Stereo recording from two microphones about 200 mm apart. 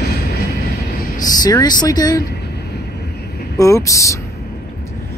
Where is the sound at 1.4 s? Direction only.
20° left (ahead or behind).